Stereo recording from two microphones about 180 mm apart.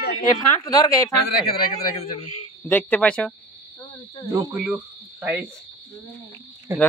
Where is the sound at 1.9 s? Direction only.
35° left (ahead or behind).